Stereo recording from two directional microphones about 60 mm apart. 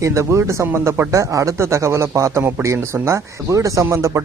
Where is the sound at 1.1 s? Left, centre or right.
Right.